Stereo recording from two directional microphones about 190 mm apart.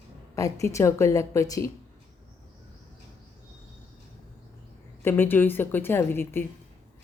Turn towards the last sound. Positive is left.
turn(degrees=10)  # may be behind; listen again after turning